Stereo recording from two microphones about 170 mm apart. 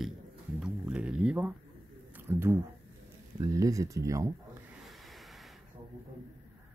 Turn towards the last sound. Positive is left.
turn(degrees=0)  # may be behind; listen again after turning